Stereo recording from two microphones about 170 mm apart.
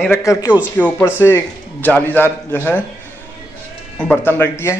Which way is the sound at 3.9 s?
10° left (ahead or behind).